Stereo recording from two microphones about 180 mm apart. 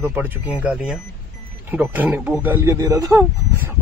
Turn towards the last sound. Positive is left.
turn(degrees=-15)  # may be behind; listen again after turning